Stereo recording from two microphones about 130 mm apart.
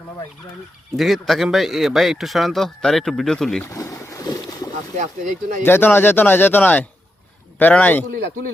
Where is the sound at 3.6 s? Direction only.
25° left (ahead or behind).